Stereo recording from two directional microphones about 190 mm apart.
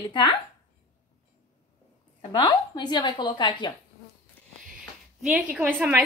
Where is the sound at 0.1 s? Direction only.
25° left (ahead or behind).